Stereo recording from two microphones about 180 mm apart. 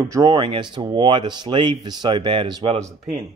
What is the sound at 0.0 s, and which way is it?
Speech, 20° right (ahead or behind).